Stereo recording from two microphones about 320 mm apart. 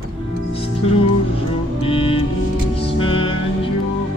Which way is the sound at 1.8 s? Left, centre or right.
Centre.